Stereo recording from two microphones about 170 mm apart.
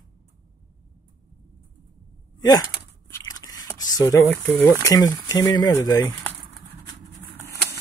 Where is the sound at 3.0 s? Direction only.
20° left (ahead or behind).